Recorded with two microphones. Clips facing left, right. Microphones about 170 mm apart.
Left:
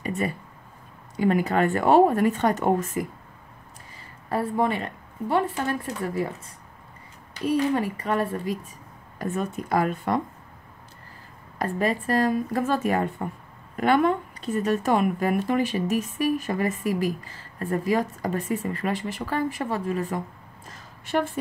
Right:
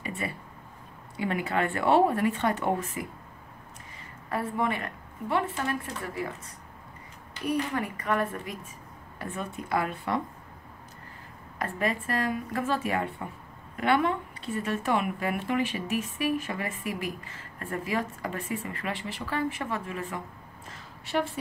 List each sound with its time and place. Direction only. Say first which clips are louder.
0.0 s a sound: left 7 dB; 45° left (ahead or behind)
1.1 s speech: left 7 dB; 40° left (ahead or behind)
4.3 s a woman's voice: left 5 dB; 35° left (ahead or behind)
7.4 s a woman's voice: left 6 dB; 30° left (ahead or behind)
9.2 s speech: left 7 dB; 45° left (ahead or behind)
11.5 s a woman's voice: left 5 dB; 35° left (ahead or behind)
20.7 s a sound: left 4 dB; 50° left (ahead or behind)